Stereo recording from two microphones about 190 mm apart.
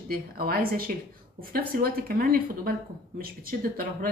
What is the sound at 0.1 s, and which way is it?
A woman's voice, 50° right (ahead or behind).